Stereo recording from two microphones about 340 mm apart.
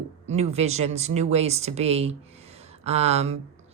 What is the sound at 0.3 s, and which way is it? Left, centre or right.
Speech, centre.